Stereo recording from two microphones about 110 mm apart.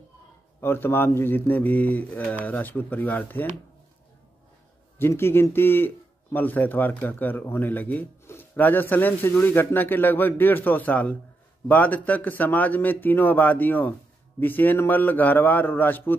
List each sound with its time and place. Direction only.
0.6 s a man's voice: 20° left (ahead or behind)
4.9 s a man's voice: 20° left (ahead or behind)